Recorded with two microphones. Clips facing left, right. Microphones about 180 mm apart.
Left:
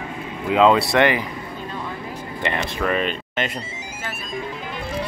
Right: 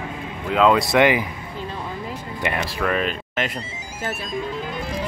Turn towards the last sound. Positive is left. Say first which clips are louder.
# even
turn(degrees=0)  # may be behind; listen again after turning